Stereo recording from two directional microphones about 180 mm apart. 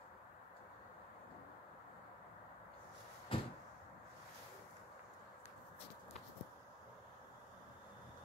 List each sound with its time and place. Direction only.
3.3 s cupboard open or close: 30° left (ahead or behind)